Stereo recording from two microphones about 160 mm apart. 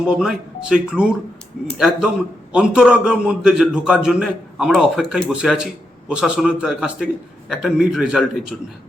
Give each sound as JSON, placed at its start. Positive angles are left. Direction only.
{"t": 0.0, "sound": "a man's voice", "side_deg": -5}